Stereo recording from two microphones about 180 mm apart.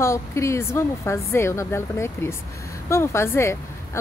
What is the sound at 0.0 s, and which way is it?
Speech, 15° left (ahead or behind).